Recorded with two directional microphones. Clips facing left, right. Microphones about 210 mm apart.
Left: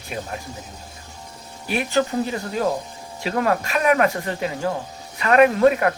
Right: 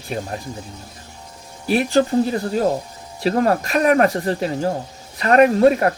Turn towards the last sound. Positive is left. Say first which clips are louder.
# right 2 dB
turn(degrees=-35)  # may be behind; listen again after turning